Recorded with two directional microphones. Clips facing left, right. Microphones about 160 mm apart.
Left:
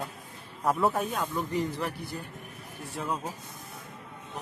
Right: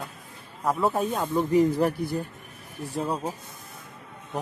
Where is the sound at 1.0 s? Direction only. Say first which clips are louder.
Right 5 dB; 30° right (ahead or behind).